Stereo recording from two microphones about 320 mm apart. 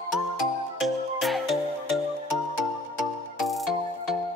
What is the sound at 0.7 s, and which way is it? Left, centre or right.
Music, centre.